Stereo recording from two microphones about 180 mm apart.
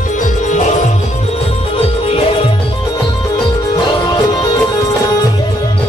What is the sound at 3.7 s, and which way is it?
Music, 25° left (ahead or behind).